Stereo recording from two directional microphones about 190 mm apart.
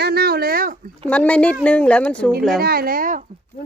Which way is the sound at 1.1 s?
5° left (ahead or behind).